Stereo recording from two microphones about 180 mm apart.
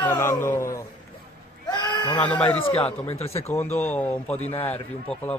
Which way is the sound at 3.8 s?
10° left (ahead or behind).